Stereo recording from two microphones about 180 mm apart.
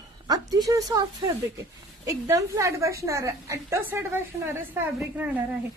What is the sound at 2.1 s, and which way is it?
A woman's voice, 15° right (ahead or behind).